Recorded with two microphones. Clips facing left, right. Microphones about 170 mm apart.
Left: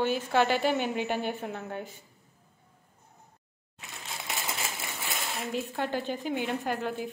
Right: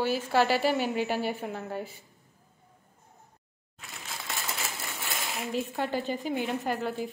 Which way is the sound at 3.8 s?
20° left (ahead or behind).